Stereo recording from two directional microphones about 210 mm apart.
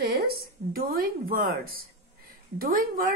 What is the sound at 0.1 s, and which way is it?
A woman's voice, 45° right (ahead or behind).